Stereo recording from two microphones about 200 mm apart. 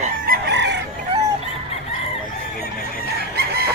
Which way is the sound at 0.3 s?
55° right (ahead or behind).